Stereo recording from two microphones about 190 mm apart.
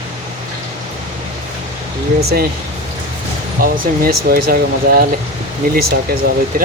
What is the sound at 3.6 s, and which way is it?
Speech, 50° right (ahead or behind).